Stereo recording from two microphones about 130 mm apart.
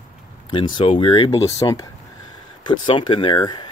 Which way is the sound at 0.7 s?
40° left (ahead or behind).